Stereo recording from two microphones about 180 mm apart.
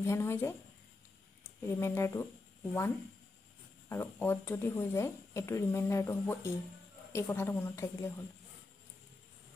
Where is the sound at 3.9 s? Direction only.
15° left (ahead or behind).